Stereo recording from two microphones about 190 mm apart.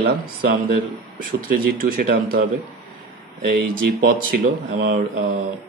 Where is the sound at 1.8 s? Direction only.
50° right (ahead or behind).